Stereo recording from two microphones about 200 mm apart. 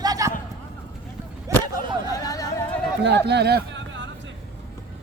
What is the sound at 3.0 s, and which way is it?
Speech, 55° right (ahead or behind).